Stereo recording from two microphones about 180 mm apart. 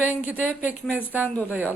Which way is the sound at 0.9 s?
10° right (ahead or behind).